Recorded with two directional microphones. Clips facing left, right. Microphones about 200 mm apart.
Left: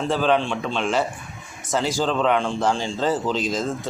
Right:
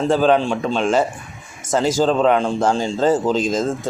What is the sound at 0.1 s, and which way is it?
A man's voice, 45° right (ahead or behind).